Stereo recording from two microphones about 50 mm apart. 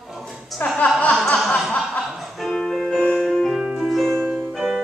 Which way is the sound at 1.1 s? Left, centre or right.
Centre.